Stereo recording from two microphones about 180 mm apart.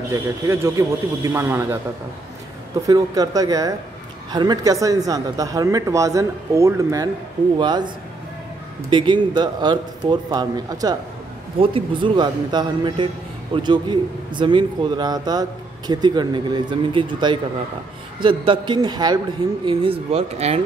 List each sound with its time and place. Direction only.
0.1 s a man's voice: 15° right (ahead or behind)
2.9 s speech: 20° right (ahead or behind)
8.9 s speech: 25° right (ahead or behind)